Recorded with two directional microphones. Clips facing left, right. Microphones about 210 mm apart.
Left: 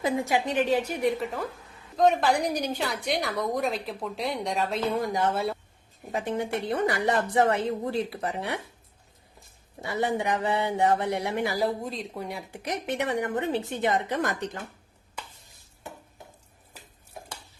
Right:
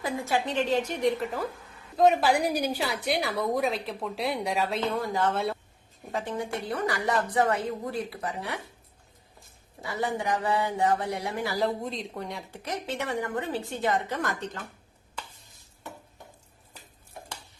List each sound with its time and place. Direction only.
0.0 s a woman's voice: 20° left (ahead or behind)
9.8 s a woman's voice: 20° left (ahead or behind)
11.5 s a woman's voice: 5° left (ahead or behind)